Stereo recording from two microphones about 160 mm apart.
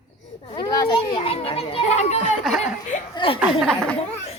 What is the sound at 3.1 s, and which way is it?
Speech, 35° left (ahead or behind).